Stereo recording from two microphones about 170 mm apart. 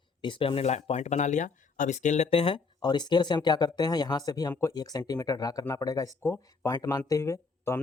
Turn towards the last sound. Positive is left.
turn(degrees=15)  # may be behind; listen again after turning